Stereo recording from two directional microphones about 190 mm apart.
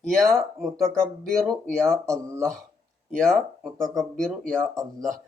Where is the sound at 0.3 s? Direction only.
Centre (ahead or behind).